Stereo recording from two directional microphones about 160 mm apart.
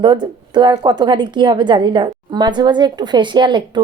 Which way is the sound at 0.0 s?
30° right (ahead or behind).